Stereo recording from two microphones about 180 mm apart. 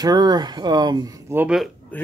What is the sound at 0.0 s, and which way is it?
Speech, 20° right (ahead or behind).